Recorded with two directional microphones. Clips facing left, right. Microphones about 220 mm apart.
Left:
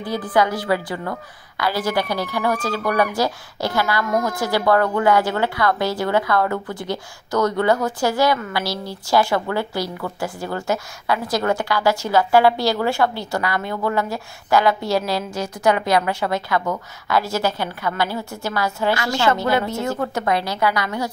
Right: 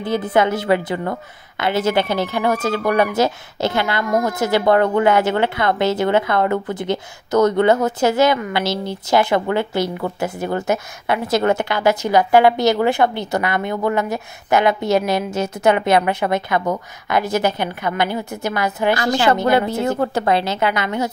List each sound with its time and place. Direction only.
0.0 s speech: 25° right (ahead or behind)
19.6 s speech: 35° right (ahead or behind)